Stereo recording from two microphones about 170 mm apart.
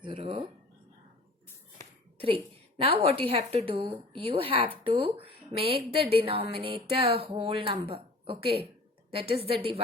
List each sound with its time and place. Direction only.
0.0 s speech: 35° right (ahead or behind)
2.1 s a sound: 30° right (ahead or behind)
2.8 s speech: 35° right (ahead or behind)